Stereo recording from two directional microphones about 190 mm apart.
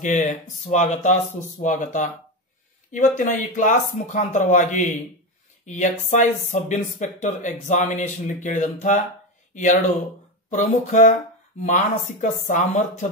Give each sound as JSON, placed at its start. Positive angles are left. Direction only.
{"t": 0.0, "sound": "speech", "side_deg": 40}